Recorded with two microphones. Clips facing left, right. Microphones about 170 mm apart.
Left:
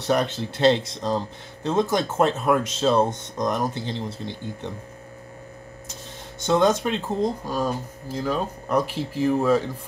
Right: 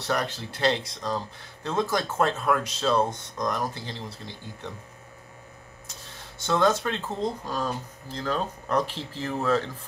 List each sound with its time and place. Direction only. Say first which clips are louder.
0.0 s speech: left 6 dB; 20° left (ahead or behind)
6.4 s speech: left 4 dB; 20° left (ahead or behind)